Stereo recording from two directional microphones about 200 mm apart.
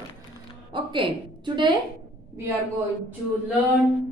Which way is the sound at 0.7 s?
25° right (ahead or behind).